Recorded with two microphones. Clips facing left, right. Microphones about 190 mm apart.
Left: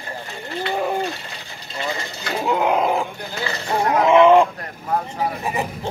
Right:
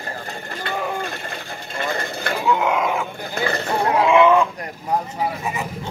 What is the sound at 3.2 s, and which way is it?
Speech, 55° right (ahead or behind).